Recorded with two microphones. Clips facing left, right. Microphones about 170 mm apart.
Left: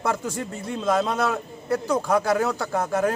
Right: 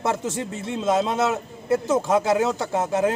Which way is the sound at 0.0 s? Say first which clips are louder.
Right 1 dB; 25° right (ahead or behind).